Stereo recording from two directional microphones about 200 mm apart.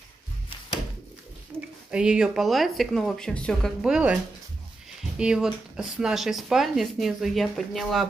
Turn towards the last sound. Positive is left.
turn(degrees=0)  # may be behind; listen again after turning